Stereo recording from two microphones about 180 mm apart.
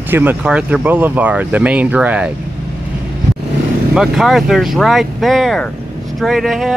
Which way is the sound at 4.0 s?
Centre (ahead or behind).